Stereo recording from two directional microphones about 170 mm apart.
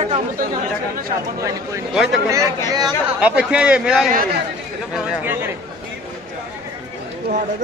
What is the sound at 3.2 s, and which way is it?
A man's voice, 5° right (ahead or behind).